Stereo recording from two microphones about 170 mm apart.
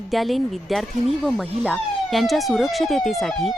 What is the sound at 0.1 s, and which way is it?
Speech, centre (ahead or behind).